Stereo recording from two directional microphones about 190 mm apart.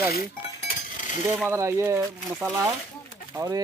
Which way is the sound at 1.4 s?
15° right (ahead or behind).